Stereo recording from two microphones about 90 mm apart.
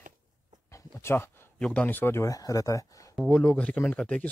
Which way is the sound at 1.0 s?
25° left (ahead or behind).